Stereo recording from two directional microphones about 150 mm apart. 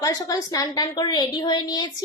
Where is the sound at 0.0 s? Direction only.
25° left (ahead or behind).